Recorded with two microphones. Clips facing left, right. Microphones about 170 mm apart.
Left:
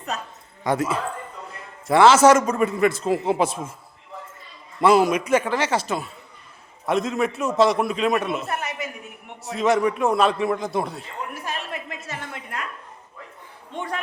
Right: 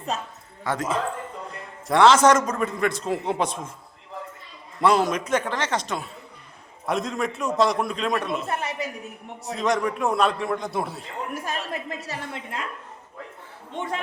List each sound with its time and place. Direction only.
0.1 s a man's voice: 25° right (ahead or behind)
0.6 s a man's voice: 10° left (ahead or behind)
4.8 s a man's voice: 5° left (ahead or behind)
8.4 s a woman's voice: 30° right (ahead or behind)
9.5 s a man's voice: 5° left (ahead or behind)
11.4 s a woman's voice: 35° right (ahead or behind)
13.7 s a man's voice: 25° right (ahead or behind)